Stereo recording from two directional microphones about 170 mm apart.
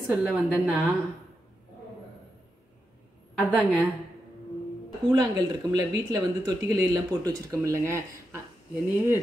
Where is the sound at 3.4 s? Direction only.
10° left (ahead or behind).